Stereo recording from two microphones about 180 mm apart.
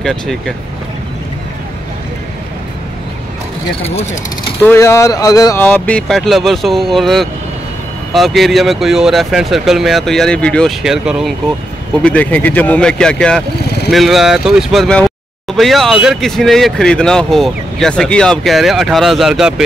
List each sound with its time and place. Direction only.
0.0 s speech: centre (ahead or behind)
3.8 s speech: 35° left (ahead or behind)
4.6 s speech: 15° left (ahead or behind)
5.6 s speech: 10° left (ahead or behind)